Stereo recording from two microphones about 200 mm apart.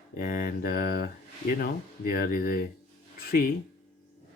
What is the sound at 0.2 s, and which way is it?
Speech, 45° left (ahead or behind).